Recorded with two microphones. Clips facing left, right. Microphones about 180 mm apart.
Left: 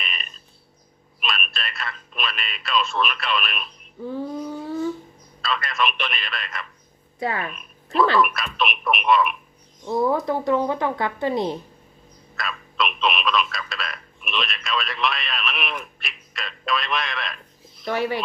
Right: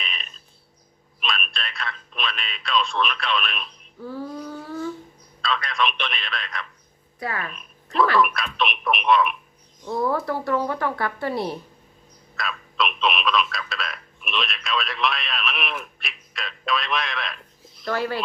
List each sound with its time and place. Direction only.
0.0 s a sound: centre (ahead or behind)
1.2 s telephone: 5° left (ahead or behind)
4.0 s child singing: 20° left (ahead or behind)
5.4 s a man's voice: 5° left (ahead or behind)
7.2 s speech: 25° left (ahead or behind)
7.5 s a sound: 5° left (ahead or behind)
8.2 s a man's voice: centre (ahead or behind)
9.8 s speech: 20° left (ahead or behind)
12.4 s telephone: centre (ahead or behind)
17.8 s speech: 15° left (ahead or behind)